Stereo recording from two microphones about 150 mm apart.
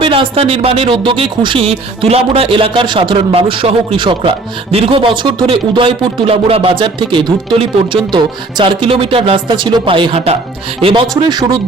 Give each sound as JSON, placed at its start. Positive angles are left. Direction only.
{"t": 0.0, "sound": "speech", "side_deg": -35}